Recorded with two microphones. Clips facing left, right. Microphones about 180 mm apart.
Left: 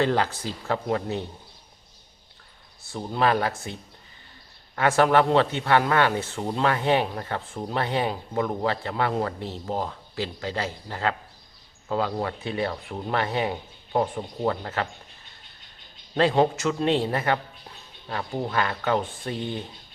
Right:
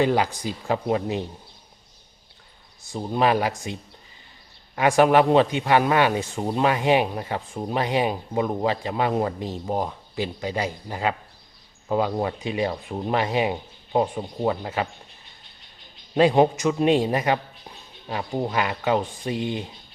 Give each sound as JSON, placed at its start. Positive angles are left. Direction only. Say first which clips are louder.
{"t": 0.0, "sound": "speech", "louder": "right 2 dB", "side_deg": -15}
{"t": 2.9, "sound": "speech", "louder": "right 2 dB", "side_deg": -15}
{"t": 4.7, "sound": "speech", "louder": "right 3 dB", "side_deg": -15}
{"t": 16.1, "sound": "speech", "louder": "right 3 dB", "side_deg": -15}